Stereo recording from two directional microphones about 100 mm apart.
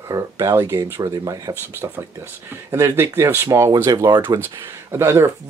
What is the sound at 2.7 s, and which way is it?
Speech, 30° right (ahead or behind).